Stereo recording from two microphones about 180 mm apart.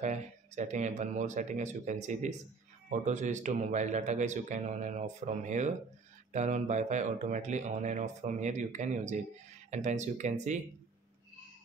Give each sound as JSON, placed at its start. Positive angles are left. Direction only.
{"t": 0.0, "sound": "speech", "side_deg": -40}